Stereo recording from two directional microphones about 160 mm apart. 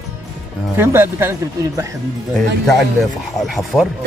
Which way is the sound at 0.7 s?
15° right (ahead or behind).